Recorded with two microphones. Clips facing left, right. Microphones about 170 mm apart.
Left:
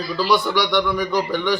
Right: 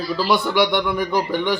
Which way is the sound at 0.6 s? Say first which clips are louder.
Right 1 dB; 55° right (ahead or behind).